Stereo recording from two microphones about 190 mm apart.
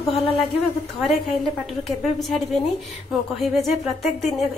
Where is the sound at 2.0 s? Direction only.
Centre (ahead or behind).